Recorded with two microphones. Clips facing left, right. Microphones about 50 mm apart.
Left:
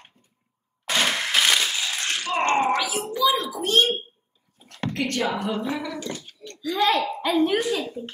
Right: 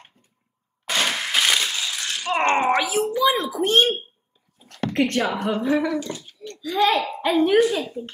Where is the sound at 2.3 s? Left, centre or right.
Right.